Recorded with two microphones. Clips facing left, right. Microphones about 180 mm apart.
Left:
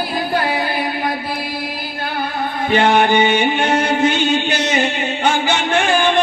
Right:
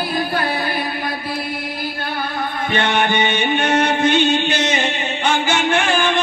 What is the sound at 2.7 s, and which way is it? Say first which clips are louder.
Music: left 6 dB; 35° left (ahead or behind).